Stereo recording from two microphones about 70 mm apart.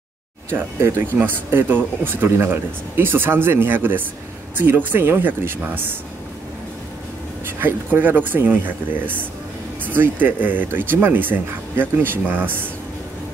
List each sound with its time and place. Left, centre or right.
0.5 s speech: right
7.4 s speech: right